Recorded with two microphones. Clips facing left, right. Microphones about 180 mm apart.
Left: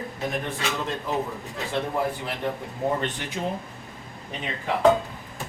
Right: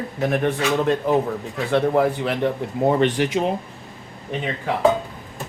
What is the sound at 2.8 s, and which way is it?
Speech, 85° right.